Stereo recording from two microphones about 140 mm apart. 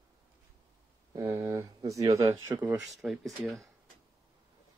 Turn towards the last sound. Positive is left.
turn(degrees=0)  # may be behind; listen again after turning